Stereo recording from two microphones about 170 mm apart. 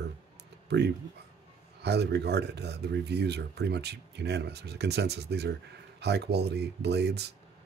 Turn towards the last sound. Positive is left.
turn(degrees=-75)  # may be behind; listen again after turning